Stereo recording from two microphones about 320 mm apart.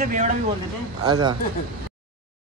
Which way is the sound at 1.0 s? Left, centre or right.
Centre.